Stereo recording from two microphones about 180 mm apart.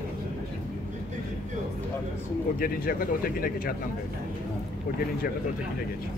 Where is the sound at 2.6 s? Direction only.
55° left (ahead or behind).